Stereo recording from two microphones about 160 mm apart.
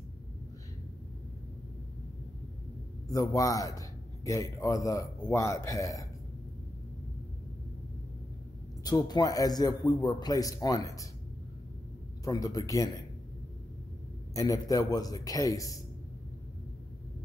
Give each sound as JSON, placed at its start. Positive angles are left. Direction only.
{"t": 3.1, "sound": "a man's voice", "side_deg": 20}
{"t": 8.8, "sound": "a man's voice", "side_deg": 25}
{"t": 12.3, "sound": "a man's voice", "side_deg": 20}
{"t": 14.3, "sound": "a man's voice", "side_deg": 20}